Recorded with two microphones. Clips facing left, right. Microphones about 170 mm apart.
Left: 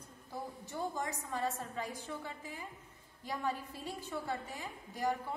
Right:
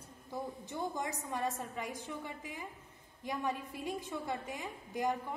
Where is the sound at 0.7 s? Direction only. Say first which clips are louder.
Even; 15° right (ahead or behind).